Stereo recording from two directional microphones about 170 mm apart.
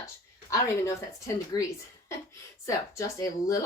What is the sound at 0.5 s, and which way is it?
Speech, 20° left (ahead or behind).